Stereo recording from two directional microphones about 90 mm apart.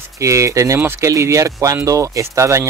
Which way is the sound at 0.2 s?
35° right (ahead or behind).